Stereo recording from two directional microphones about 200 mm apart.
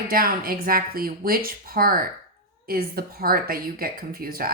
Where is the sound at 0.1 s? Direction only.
45° right (ahead or behind).